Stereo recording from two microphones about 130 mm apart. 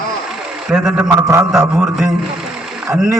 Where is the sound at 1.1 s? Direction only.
25° right (ahead or behind).